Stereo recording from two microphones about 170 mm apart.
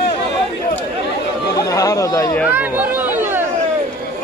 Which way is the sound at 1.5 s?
20° left (ahead or behind).